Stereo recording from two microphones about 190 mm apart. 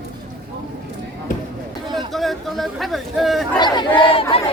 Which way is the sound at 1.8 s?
25° right (ahead or behind).